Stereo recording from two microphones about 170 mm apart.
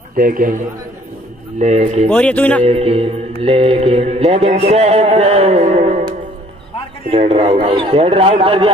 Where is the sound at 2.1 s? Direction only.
5° left (ahead or behind).